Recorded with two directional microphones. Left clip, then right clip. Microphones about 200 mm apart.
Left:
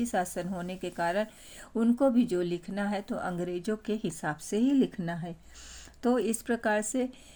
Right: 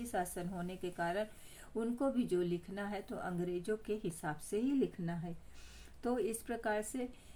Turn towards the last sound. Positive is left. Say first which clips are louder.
# left 9 dB
turn(degrees=35)  # may be behind; listen again after turning